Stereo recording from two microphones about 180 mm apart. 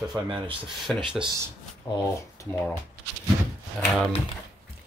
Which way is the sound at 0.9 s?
Centre (ahead or behind).